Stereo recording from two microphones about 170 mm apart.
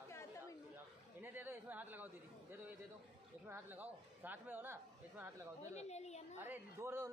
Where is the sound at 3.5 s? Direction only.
10° right (ahead or behind).